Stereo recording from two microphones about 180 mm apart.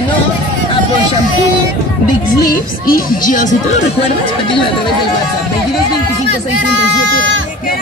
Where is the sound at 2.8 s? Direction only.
50° left (ahead or behind).